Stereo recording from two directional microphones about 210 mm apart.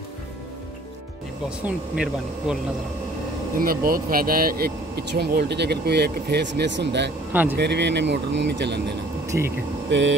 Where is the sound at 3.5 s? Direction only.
45° right (ahead or behind).